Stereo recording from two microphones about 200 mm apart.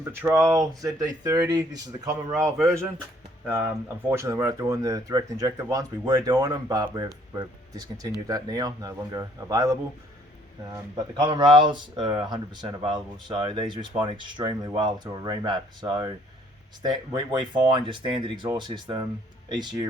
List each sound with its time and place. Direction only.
0.0 s speech: 10° right (ahead or behind)
10.9 s speech: 20° right (ahead or behind)